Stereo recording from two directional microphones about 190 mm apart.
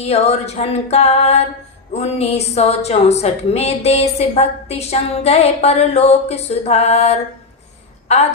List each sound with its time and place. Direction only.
0.0 s a woman's voice: 35° left (ahead or behind)